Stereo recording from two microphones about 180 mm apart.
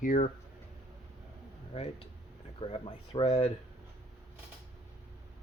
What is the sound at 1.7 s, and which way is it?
Speech, 35° left (ahead or behind).